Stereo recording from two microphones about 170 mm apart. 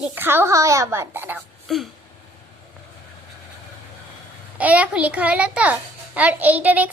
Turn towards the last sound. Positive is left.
turn(degrees=-10)  # may be behind; listen again after turning